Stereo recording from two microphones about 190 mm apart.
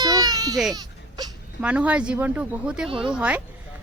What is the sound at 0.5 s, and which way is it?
A woman's voice, centre (ahead or behind).